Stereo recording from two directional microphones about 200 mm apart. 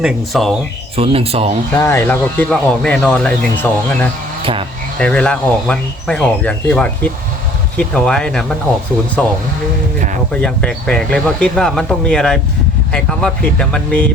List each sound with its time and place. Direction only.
0.0 s speech: centre (ahead or behind)
0.9 s speech: 30° right (ahead or behind)
1.7 s speech: 10° left (ahead or behind)
10.3 s speech: 5° left (ahead or behind)